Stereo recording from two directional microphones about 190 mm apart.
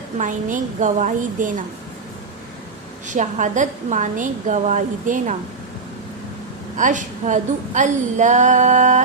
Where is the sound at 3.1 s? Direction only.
40° right (ahead or behind).